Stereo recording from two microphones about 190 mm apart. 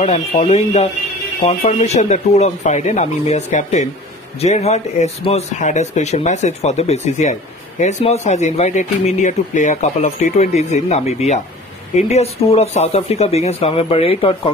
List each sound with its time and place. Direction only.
0.0 s speech: 35° left (ahead or behind)